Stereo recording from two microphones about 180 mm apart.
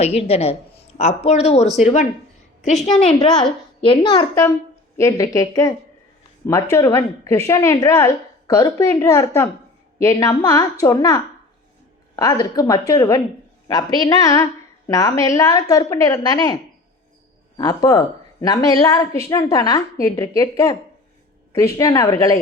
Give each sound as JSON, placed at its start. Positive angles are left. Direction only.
{"t": 0.0, "sound": "speech", "side_deg": 35}
{"t": 2.8, "sound": "a woman's voice", "side_deg": 30}
{"t": 17.6, "sound": "a woman's voice", "side_deg": 20}